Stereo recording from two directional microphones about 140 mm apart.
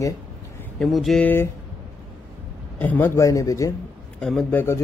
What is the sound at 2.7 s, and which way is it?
Speech, 10° left (ahead or behind).